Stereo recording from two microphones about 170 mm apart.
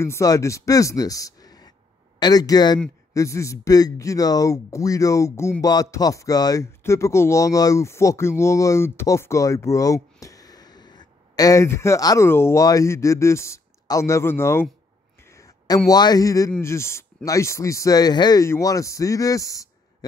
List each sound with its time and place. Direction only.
0.0 s speech: 20° left (ahead or behind)
15.3 s a sound: 20° left (ahead or behind)
15.9 s speech: 25° left (ahead or behind)